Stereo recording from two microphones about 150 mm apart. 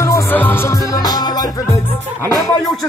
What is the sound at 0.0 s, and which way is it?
Music, 15° left (ahead or behind).